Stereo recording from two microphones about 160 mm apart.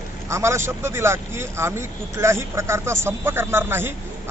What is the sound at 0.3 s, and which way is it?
Speech, 15° right (ahead or behind).